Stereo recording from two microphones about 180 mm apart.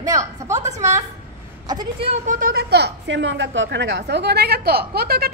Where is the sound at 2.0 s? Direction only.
40° right (ahead or behind); by 5.3 s 60° right (ahead or behind).